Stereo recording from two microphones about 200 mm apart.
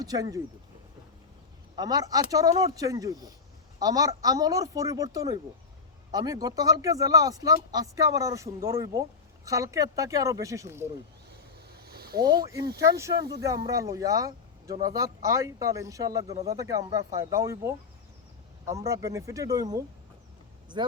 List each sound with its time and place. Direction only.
0.0 s speech: 20° right (ahead or behind)
1.7 s speech: 20° right (ahead or behind)
11.7 s a sound: 50° right (ahead or behind)
12.8 s speech: 15° right (ahead or behind)